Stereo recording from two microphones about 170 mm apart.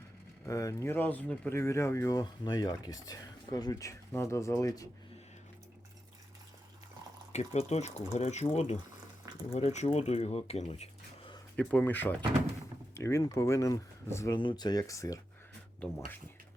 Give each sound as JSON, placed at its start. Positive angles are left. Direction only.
{"t": 0.4, "sound": "speech", "side_deg": 20}
{"t": 7.3, "sound": "speech", "side_deg": 40}
{"t": 11.5, "sound": "speech", "side_deg": 5}